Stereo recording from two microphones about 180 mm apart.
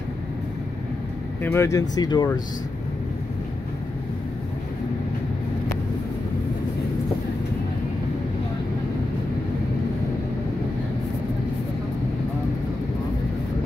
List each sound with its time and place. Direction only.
1.4 s speech: 15° left (ahead or behind)